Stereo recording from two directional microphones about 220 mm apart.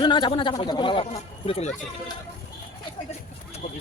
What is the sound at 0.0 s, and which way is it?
Speech, 20° left (ahead or behind).